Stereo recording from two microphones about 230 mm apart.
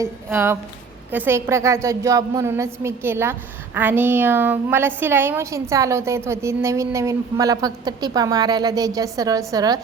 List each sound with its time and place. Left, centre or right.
0.0 s a woman's voice: centre